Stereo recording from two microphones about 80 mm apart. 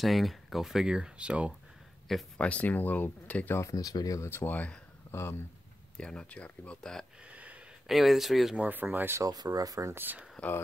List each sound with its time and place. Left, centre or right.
0.0 s speech: centre
2.3 s speech: centre
3.7 s speech: left
4.3 s speech: left
5.9 s speech: centre
7.2 s a sound: centre
7.8 s speech: centre
8.5 s speech: right
9.2 s speech: right
9.9 s speech: right